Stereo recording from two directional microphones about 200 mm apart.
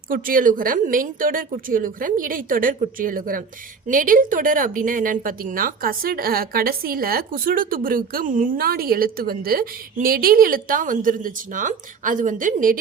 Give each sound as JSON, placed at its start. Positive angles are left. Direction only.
{"t": 0.1, "sound": "speech", "side_deg": -45}